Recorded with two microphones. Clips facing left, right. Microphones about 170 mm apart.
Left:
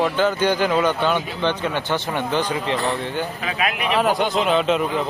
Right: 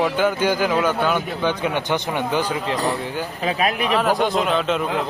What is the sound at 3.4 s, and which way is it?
Speech, 35° right (ahead or behind).